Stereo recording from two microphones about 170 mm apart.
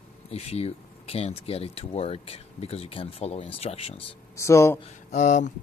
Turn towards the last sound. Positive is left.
turn(degrees=45)  # may be behind; listen again after turning